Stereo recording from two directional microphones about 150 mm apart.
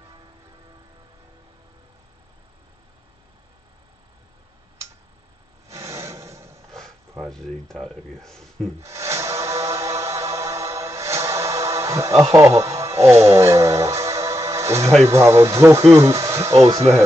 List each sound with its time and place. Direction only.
5.7 s a sound: 20° right (ahead or behind)
7.2 s speech: 5° left (ahead or behind)
8.8 s music: 20° right (ahead or behind)
15.0 s speech: 15° right (ahead or behind)